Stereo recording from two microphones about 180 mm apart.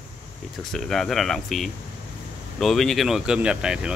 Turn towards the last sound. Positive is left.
turn(degrees=-5)  # may be behind; listen again after turning